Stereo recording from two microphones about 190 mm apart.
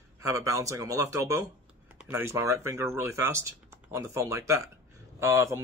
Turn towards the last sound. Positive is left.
turn(degrees=-15)  # may be behind; listen again after turning